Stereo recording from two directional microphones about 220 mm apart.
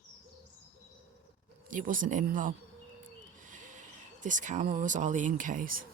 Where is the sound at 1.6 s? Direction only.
35° right (ahead or behind).